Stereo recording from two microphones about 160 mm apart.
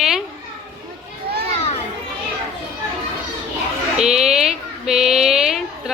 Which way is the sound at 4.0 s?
5° right (ahead or behind).